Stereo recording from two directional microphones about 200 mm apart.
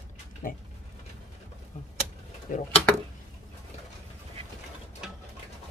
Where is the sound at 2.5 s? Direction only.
40° left (ahead or behind).